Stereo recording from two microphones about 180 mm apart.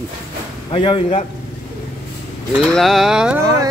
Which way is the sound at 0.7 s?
30° left (ahead or behind).